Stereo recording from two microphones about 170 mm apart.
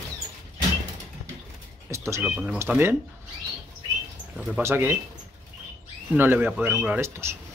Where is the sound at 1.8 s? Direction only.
15° right (ahead or behind).